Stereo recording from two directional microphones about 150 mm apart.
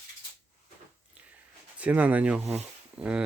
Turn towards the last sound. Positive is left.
turn(degrees=-5)  # may be behind; listen again after turning